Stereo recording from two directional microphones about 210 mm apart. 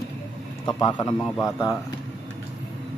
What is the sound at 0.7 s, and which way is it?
A man's voice, 20° left (ahead or behind).